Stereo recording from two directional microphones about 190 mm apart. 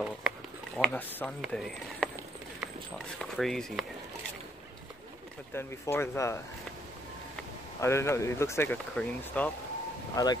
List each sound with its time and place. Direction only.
0.7 s speech: 5° left (ahead or behind)
3.2 s speech: centre (ahead or behind)
5.5 s speech: 10° left (ahead or behind)
7.8 s speech: 15° left (ahead or behind)
10.1 s speech: 20° left (ahead or behind)